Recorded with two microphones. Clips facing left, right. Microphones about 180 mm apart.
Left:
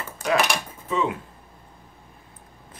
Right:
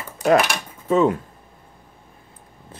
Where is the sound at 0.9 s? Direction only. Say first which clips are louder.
Right 8 dB; 45° right (ahead or behind).